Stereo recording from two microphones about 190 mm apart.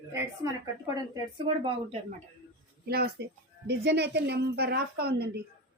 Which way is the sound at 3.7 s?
65° right (ahead or behind).